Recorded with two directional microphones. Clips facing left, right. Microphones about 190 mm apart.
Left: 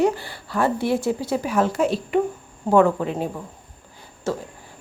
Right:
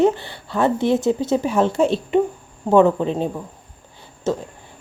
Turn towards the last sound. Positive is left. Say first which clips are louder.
# right 4 dB
turn(degrees=-20)  # may be behind; listen again after turning